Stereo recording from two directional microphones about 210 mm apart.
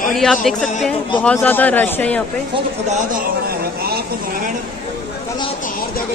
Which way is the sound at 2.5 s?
35° right (ahead or behind).